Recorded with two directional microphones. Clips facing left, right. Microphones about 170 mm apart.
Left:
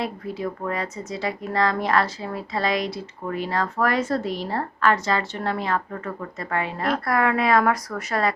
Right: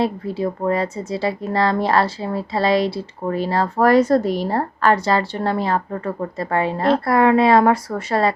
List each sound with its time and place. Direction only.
0.0 s speech: 30° right (ahead or behind)